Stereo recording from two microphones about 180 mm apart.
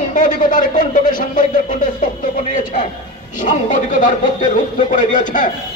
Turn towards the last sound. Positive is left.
turn(degrees=50)  # may be behind; listen again after turning